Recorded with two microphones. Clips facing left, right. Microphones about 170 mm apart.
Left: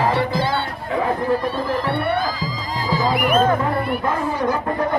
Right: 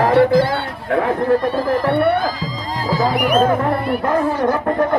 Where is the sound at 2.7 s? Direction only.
40° right (ahead or behind).